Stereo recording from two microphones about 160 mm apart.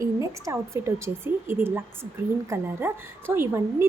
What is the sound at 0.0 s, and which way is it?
A woman's voice, 20° right (ahead or behind).